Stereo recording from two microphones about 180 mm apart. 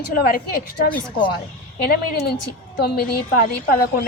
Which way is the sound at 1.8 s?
60° left (ahead or behind).